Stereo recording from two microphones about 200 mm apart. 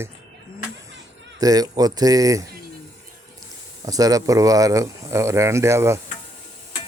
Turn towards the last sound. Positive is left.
turn(degrees=-15)  # may be behind; listen again after turning